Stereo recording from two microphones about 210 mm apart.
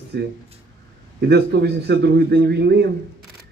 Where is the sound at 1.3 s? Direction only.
50° right (ahead or behind).